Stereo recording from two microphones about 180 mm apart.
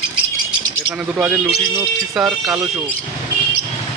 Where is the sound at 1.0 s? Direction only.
5° right (ahead or behind).